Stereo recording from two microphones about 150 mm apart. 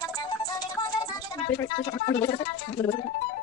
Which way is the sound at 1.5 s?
15° left (ahead or behind).